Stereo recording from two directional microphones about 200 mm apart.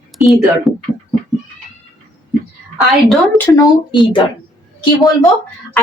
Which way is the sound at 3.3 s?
15° left (ahead or behind).